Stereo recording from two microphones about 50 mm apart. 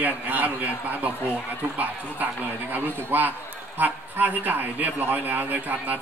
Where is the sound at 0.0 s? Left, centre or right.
Right.